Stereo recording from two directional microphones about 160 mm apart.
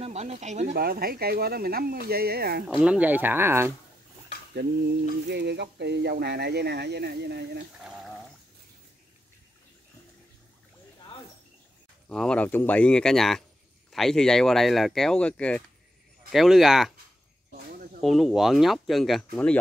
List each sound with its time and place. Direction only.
0.0 s speech: 40° right (ahead or behind)
0.7 s speech: 70° right (ahead or behind)
2.7 s speech: 10° right (ahead or behind)
4.6 s a sound: 90° right
7.8 s a sound: centre (ahead or behind)
12.1 s speech: 5° left (ahead or behind)
18.0 s speech: centre (ahead or behind)